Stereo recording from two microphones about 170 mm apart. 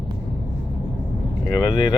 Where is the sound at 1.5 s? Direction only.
20° left (ahead or behind).